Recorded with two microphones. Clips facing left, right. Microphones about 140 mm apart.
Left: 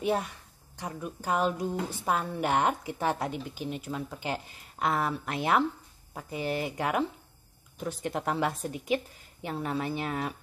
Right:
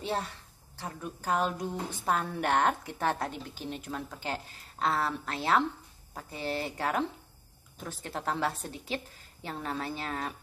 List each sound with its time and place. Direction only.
0.0 s a woman's voice: 15° left (ahead or behind)